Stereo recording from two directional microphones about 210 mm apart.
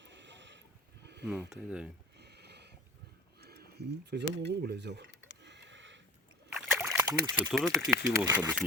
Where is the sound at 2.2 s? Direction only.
50° right (ahead or behind).